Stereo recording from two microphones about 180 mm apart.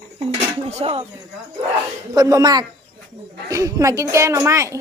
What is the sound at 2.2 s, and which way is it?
Speech, 20° right (ahead or behind).